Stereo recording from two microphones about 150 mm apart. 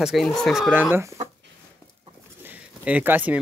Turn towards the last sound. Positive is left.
turn(degrees=-10)  # may be behind; listen again after turning